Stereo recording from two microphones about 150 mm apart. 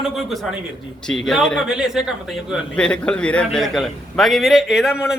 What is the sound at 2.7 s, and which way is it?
Speech, 5° left (ahead or behind).